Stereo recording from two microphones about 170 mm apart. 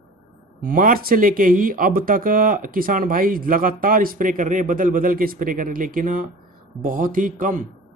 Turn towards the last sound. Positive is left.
turn(degrees=-50)  # may be behind; listen again after turning